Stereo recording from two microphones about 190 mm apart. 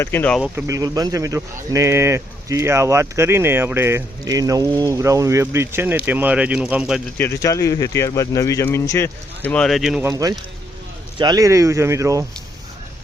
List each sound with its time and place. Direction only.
0.0 s speech: 10° left (ahead or behind)
0.4 s speech: 10° right (ahead or behind)
0.8 s speech: 20° right (ahead or behind)
7.2 s speech: 15° left (ahead or behind)
10.0 s speech: 20° right (ahead or behind)